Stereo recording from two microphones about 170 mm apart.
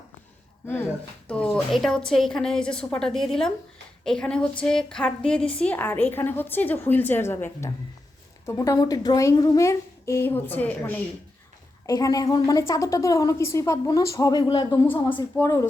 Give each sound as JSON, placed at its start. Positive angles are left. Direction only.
{"t": 1.3, "sound": "a woman's voice", "side_deg": 5}
{"t": 11.9, "sound": "a woman's voice", "side_deg": 20}